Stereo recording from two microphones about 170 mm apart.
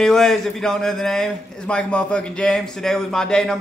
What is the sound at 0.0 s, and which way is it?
A man's voice, 5° left (ahead or behind).